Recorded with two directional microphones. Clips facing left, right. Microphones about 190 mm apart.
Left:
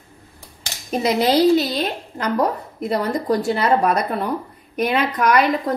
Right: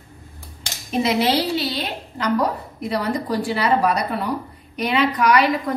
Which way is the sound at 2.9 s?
45° left (ahead or behind).